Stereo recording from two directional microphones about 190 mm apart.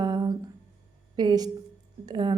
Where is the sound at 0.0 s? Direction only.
20° right (ahead or behind).